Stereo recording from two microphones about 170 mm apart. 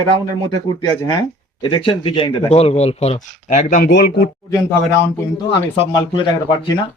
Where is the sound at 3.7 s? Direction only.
70° left (ahead or behind).